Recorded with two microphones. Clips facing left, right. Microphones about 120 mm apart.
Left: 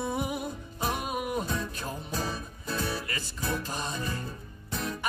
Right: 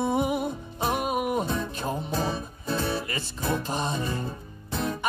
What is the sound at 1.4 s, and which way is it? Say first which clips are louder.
Music: right 5 dB; 20° right (ahead or behind).